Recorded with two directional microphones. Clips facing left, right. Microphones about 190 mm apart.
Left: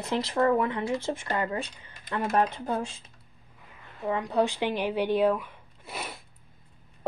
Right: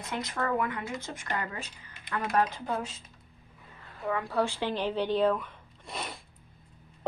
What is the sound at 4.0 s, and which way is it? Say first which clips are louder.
Speech: left 3 dB; 20° left (ahead or behind).